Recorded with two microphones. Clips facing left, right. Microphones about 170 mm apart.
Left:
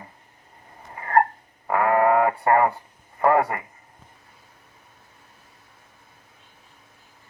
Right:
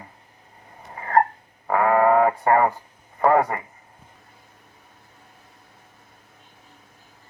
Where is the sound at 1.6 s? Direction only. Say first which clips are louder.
Right 1 dB; 20° right (ahead or behind).